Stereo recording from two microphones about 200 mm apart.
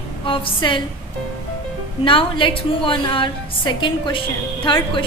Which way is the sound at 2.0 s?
25° left (ahead or behind).